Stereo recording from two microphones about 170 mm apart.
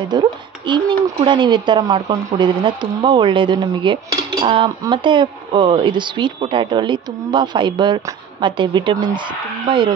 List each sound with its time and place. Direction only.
0.1 s speech: 25° right (ahead or behind)